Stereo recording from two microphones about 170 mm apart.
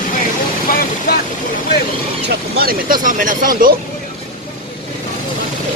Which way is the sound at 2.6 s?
55° right (ahead or behind).